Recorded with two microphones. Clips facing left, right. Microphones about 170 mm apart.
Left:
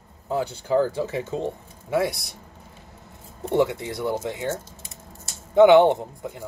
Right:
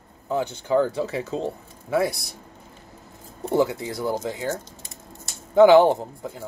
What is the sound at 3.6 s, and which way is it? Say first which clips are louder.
Speech: even; 25° left (ahead or behind).